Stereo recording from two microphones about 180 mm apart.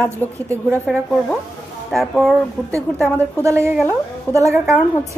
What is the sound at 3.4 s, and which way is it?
A woman's voice, 15° right (ahead or behind).